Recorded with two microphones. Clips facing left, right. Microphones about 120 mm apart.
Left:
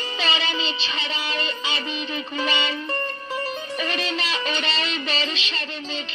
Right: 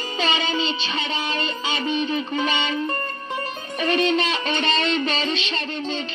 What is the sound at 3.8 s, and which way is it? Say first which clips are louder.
Music: right 9 dB; 35° right (ahead or behind).